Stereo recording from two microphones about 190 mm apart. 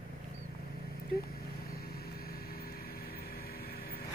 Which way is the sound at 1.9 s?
55° left (ahead or behind).